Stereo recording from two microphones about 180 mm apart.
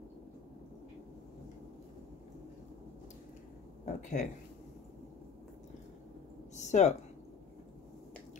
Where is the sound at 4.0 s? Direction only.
45° left (ahead or behind).